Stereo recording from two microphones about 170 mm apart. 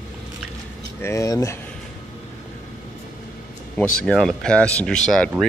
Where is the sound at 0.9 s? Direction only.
15° left (ahead or behind).